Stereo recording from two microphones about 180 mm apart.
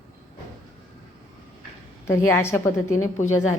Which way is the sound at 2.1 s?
15° left (ahead or behind).